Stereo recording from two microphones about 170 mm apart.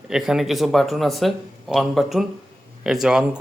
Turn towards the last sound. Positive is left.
turn(degrees=-5)  # may be behind; listen again after turning